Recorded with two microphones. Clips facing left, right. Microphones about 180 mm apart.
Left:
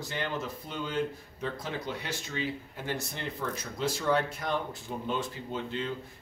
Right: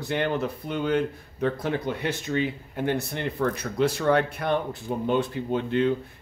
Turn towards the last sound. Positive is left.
turn(degrees=-60)  # may be behind; listen again after turning